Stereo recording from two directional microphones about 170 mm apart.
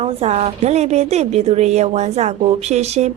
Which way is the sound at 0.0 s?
40° right (ahead or behind).